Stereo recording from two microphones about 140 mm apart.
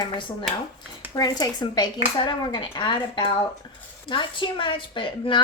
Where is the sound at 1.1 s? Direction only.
25° left (ahead or behind).